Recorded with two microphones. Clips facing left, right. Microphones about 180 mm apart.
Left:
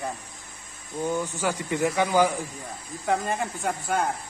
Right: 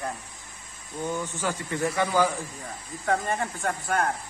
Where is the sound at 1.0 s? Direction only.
10° left (ahead or behind).